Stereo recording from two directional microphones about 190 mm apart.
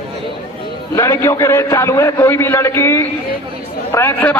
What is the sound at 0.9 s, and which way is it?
A man's voice, 15° left (ahead or behind).